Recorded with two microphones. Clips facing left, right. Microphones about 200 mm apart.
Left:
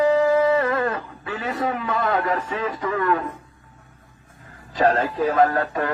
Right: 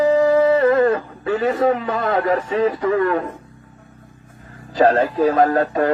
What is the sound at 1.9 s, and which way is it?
Speech, 35° right (ahead or behind).